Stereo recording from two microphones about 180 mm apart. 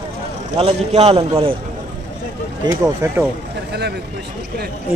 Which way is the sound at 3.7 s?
65° right (ahead or behind).